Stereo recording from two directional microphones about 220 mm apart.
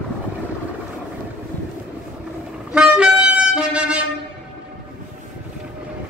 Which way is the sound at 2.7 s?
5° right (ahead or behind).